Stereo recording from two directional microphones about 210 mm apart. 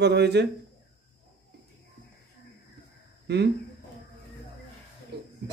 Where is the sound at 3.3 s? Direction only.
55° right (ahead or behind).